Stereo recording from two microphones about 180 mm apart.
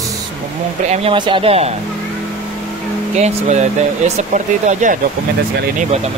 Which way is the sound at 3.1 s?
40° right (ahead or behind).